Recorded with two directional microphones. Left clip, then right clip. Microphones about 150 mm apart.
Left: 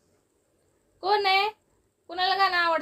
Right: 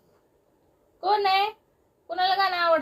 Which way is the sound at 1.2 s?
90° left.